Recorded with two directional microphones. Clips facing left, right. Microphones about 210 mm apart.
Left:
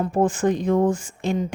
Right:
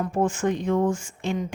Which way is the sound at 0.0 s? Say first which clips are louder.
Left 3 dB; 35° left (ahead or behind).